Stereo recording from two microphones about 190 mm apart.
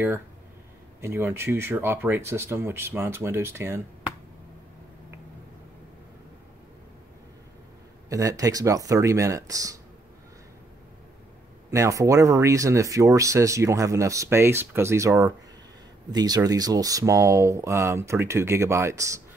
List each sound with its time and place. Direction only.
1.0 s speech: 15° right (ahead or behind)
8.1 s speech: 20° right (ahead or behind)
11.7 s speech: 15° right (ahead or behind)